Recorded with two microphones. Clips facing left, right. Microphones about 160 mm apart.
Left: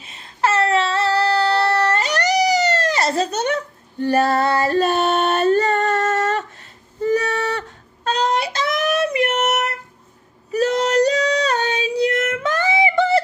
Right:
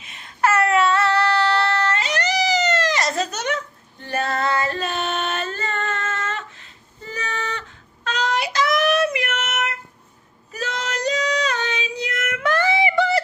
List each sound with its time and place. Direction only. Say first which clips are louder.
0.0 s child singing: even; 30° left (ahead or behind)
2.6 s a sound: left 2 dB; 30° left (ahead or behind)
4.0 s female singing: left 7 dB; 40° left (ahead or behind)
8.0 s child singing: left 4 dB; 35° left (ahead or behind)
10.5 s female singing: left 11 dB; 35° left (ahead or behind)